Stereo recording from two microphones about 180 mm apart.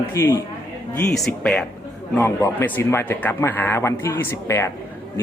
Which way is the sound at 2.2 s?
15° left (ahead or behind).